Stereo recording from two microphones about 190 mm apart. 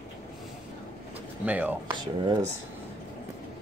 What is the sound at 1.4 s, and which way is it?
Speech, 10° right (ahead or behind).